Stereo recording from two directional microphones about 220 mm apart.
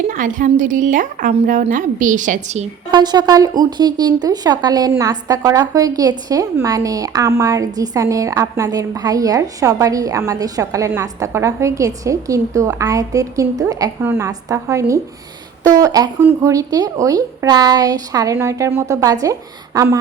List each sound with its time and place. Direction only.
0.1 s a woman's voice: 35° right (ahead or behind)
2.9 s speech: 20° right (ahead or behind)